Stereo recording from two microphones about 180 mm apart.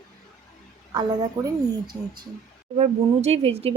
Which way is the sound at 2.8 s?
35° right (ahead or behind).